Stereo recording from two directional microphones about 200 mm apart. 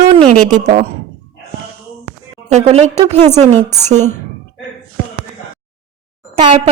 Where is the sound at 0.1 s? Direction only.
35° right (ahead or behind).